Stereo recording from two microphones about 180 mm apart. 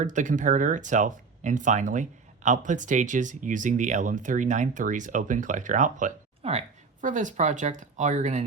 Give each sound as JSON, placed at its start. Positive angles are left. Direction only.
{"t": 0.0, "sound": "speech", "side_deg": -45}